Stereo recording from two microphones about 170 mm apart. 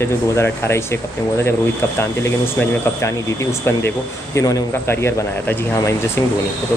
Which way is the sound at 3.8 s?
20° left (ahead or behind).